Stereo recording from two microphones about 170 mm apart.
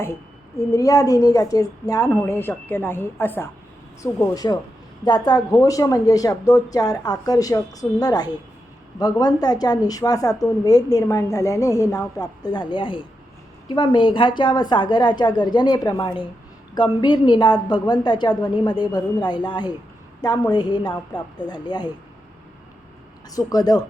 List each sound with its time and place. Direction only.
0.7 s a woman's voice: 20° left (ahead or behind)
23.5 s a woman's voice: 20° left (ahead or behind)